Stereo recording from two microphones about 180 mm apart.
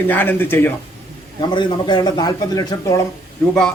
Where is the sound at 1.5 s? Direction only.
25° left (ahead or behind).